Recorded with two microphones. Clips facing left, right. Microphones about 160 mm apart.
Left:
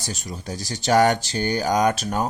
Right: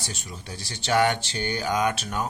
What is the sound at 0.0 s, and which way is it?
Speech, 40° left (ahead or behind).